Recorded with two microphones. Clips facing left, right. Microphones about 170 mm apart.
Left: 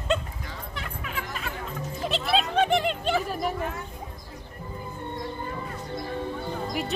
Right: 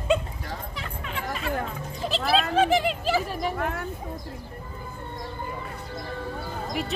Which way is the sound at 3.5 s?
65° right (ahead or behind).